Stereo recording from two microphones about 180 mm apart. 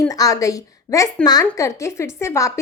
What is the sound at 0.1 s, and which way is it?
A woman's voice, 20° left (ahead or behind).